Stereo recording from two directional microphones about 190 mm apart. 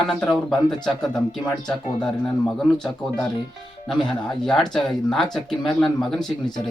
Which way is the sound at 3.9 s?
5° left (ahead or behind).